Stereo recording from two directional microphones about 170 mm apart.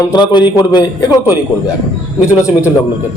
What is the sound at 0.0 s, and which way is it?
Speech, 25° left (ahead or behind).